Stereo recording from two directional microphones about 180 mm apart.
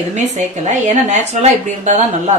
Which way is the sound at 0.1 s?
40° right (ahead or behind).